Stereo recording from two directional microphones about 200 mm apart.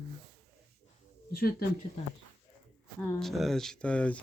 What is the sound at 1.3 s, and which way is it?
Speech, 50° left (ahead or behind).